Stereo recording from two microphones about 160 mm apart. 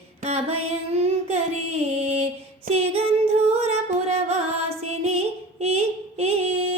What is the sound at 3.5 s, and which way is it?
Music, 40° right (ahead or behind).